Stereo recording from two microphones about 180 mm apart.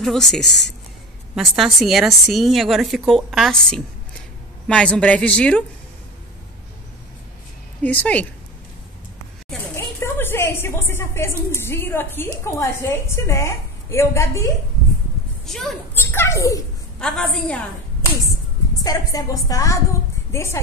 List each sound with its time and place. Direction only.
0.0 s speech: centre (ahead or behind)
1.6 s a woman's voice: centre (ahead or behind)
7.8 s a woman's voice: 10° left (ahead or behind)
9.8 s a sound: 15° left (ahead or behind)
12.4 s a woman's voice: 15° left (ahead or behind)
15.4 s speech: centre (ahead or behind)
15.9 s children playing: 15° left (ahead or behind)
17.0 s speech: 5° left (ahead or behind)
18.8 s a woman's voice: 20° left (ahead or behind)